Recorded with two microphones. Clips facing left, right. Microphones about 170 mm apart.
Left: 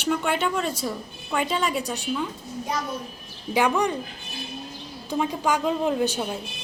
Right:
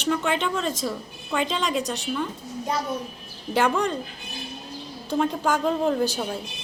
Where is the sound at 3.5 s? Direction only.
10° left (ahead or behind).